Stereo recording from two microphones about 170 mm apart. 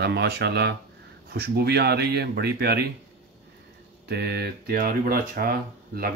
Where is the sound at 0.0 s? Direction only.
75° right (ahead or behind).